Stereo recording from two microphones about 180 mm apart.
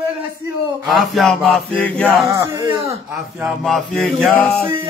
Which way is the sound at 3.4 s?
Centre (ahead or behind).